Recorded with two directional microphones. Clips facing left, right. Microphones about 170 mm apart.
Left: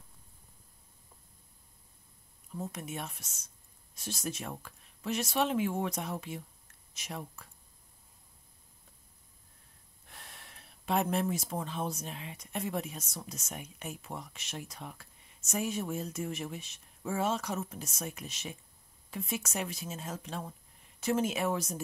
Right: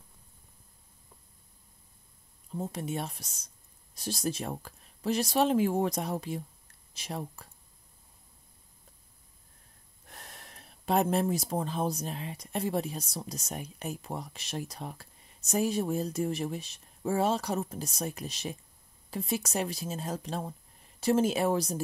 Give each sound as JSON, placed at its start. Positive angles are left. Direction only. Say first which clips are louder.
{"t": 2.5, "sound": "speech", "louder": "right 5 dB", "side_deg": -30}
{"t": 10.0, "sound": "speech", "louder": "right 3 dB", "side_deg": -40}